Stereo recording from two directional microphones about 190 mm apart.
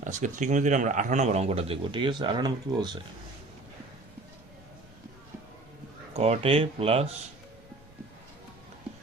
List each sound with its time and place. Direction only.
0.0 s speech: 40° right (ahead or behind); by 3.0 s 20° right (ahead or behind)
6.1 s speech: 30° right (ahead or behind)